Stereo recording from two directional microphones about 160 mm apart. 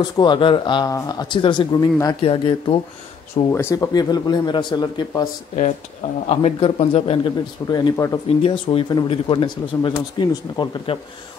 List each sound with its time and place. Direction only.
0.0 s speech: 30° left (ahead or behind)
2.2 s speech: 35° left (ahead or behind)
3.4 s speech: 20° left (ahead or behind)
6.2 s speech: 40° left (ahead or behind)
7.9 s speech: 20° left (ahead or behind)
8.3 s speech: 35° left (ahead or behind)